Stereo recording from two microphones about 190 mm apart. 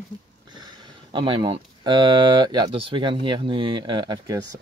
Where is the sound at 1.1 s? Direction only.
25° right (ahead or behind).